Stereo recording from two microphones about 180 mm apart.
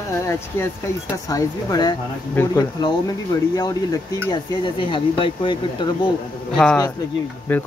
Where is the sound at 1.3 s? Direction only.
20° left (ahead or behind).